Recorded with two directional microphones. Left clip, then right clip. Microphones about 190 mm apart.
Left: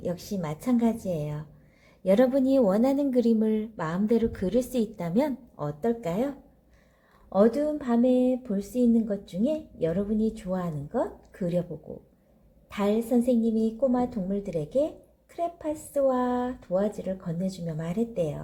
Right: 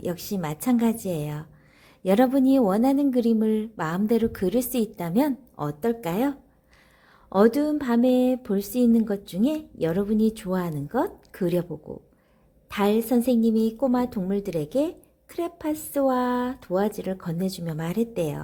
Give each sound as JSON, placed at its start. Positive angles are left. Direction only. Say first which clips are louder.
{"t": 0.0, "sound": "speech", "louder": "right 2 dB", "side_deg": -35}
{"t": 7.3, "sound": "a woman's voice", "louder": "right 2 dB", "side_deg": -50}
{"t": 12.7, "sound": "a woman's voice", "louder": "right 3 dB", "side_deg": -50}